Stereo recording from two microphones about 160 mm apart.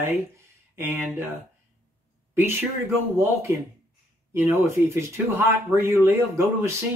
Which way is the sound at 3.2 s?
15° right (ahead or behind).